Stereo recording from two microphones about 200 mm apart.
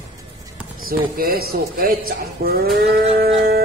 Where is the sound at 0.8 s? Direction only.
50° right (ahead or behind).